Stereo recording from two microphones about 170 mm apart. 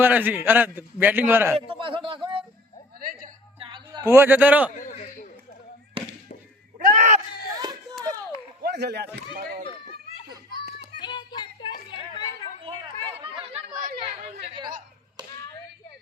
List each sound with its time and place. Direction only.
0.0 s a man's voice: 10° right (ahead or behind)
1.5 s a man's voice: 30° right (ahead or behind)
3.0 s music: 55° right (ahead or behind)
3.6 s a sound: 30° right (ahead or behind)
4.0 s a man's voice: 15° right (ahead or behind)
6.0 s music: 30° right (ahead or behind)
6.7 s a sound: 55° right (ahead or behind)
8.6 s speech: 75° right (ahead or behind)
9.1 s speech: 65° right (ahead or behind)
11.0 s a sound: 25° left (ahead or behind)
12.6 s chatter: 30° right (ahead or behind)
13.7 s chatter: 55° right (ahead or behind)
14.0 s chatter: 35° right (ahead or behind)
14.4 s a sound: 30° right (ahead or behind)